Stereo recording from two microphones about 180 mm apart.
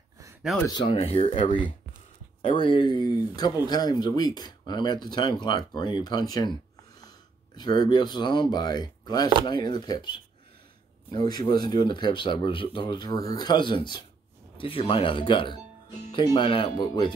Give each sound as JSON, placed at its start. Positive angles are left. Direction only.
{"t": 0.7, "sound": "speech", "side_deg": 25}
{"t": 0.9, "sound": "speech", "side_deg": 35}